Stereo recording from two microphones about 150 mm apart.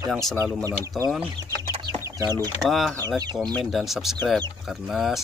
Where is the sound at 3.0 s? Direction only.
25° right (ahead or behind).